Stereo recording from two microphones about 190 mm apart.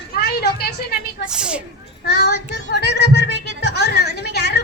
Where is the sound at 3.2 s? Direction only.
65° right (ahead or behind).